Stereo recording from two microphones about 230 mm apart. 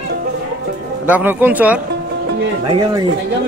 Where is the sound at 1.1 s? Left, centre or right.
Centre.